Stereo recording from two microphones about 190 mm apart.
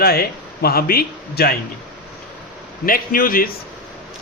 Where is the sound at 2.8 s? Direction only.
50° left (ahead or behind).